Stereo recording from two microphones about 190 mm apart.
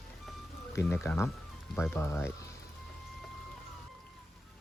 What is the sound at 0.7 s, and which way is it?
Speech, 15° left (ahead or behind).